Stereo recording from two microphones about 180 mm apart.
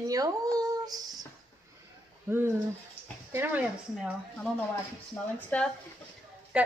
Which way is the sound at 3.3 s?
10° right (ahead or behind).